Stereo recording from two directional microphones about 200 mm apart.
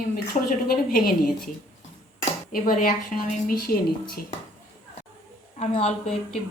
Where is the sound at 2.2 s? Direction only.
45° left (ahead or behind).